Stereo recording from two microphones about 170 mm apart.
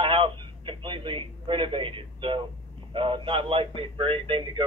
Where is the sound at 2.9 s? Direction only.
30° right (ahead or behind).